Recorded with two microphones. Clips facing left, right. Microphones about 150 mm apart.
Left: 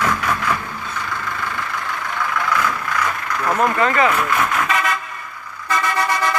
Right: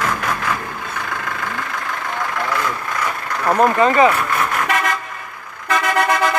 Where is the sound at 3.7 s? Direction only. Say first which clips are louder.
Right 4 dB; 20° right (ahead or behind).